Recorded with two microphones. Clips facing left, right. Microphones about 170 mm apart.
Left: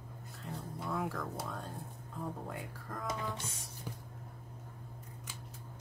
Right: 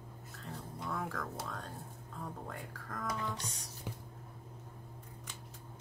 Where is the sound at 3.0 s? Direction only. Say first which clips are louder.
Even; 20° left (ahead or behind).